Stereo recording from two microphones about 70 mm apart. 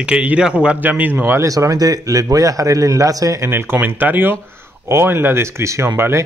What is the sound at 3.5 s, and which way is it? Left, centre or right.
A man's voice, right.